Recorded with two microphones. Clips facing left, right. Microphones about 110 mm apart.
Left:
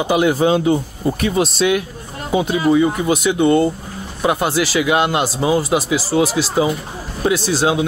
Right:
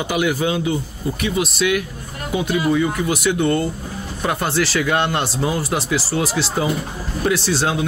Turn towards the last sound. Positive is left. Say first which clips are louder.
# left 3 dB
turn(degrees=15)  # may be behind; listen again after turning